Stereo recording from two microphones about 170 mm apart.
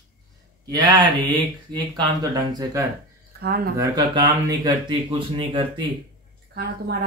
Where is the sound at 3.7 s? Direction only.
20° right (ahead or behind).